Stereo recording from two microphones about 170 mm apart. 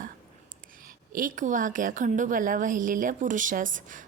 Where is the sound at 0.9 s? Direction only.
55° right (ahead or behind).